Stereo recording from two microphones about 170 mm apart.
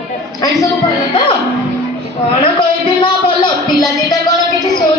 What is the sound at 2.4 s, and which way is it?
Music, 25° left (ahead or behind).